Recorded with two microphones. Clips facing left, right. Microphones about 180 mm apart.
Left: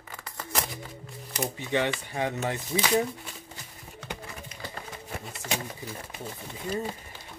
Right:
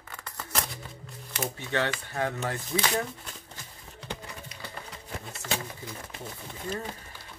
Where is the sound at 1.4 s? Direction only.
15° left (ahead or behind).